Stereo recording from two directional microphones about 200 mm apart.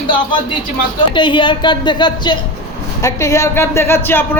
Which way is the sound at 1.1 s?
25° left (ahead or behind).